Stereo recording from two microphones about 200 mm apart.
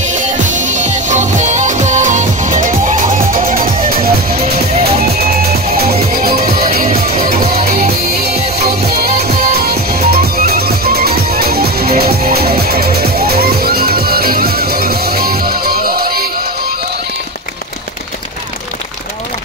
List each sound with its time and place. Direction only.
0.1 s music: 40° right (ahead or behind)
4.4 s music: 30° right (ahead or behind)
5.0 s music: 50° right (ahead or behind)